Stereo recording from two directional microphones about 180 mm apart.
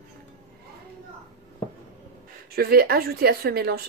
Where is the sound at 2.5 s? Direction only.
60° right (ahead or behind).